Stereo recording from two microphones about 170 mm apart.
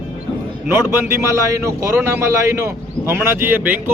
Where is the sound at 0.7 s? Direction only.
15° right (ahead or behind).